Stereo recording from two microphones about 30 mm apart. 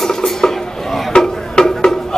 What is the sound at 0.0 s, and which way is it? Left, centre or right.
Dishes, centre.